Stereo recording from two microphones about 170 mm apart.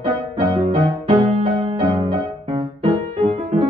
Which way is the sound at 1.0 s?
35° right (ahead or behind).